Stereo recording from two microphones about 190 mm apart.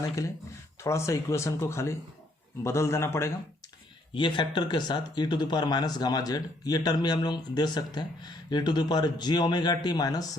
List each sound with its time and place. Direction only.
0.8 s speech: 15° left (ahead or behind)
4.1 s speech: 25° left (ahead or behind)